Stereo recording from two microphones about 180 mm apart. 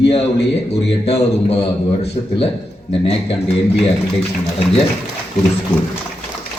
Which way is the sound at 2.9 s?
35° left (ahead or behind).